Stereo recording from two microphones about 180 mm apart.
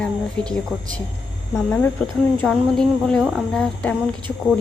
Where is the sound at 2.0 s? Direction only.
5° left (ahead or behind).